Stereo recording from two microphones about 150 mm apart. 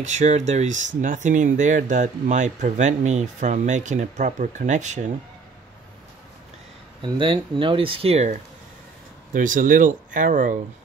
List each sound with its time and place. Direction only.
0.0 s speech: 50° right (ahead or behind)
7.0 s speech: 35° right (ahead or behind)
9.3 s speech: 60° right (ahead or behind)